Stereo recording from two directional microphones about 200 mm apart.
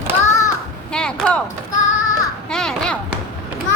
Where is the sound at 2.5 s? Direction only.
5° left (ahead or behind).